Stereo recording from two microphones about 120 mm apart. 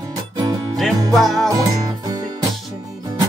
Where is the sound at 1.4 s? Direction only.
30° right (ahead or behind).